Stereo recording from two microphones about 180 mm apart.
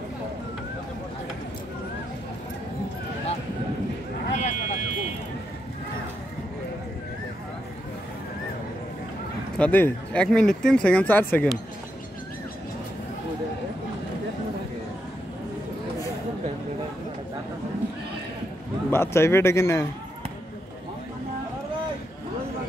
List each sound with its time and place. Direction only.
4.3 s a sound: 40° left (ahead or behind)
9.6 s speech: 10° left (ahead or behind)
18.9 s a man's voice: 15° left (ahead or behind)